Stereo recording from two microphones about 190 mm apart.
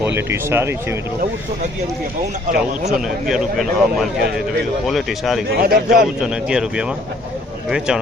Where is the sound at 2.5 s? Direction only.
40° right (ahead or behind).